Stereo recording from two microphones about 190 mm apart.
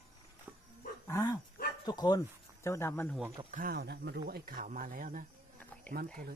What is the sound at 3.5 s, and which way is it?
Speech, 50° right (ahead or behind).